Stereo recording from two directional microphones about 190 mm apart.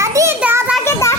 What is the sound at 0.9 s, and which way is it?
Speech, 15° left (ahead or behind).